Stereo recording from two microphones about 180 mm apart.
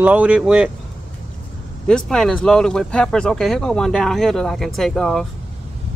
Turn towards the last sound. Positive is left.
turn(degrees=0)  # may be behind; listen again after turning